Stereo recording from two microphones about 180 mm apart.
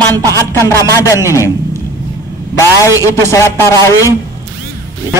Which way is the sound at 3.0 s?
15° left (ahead or behind).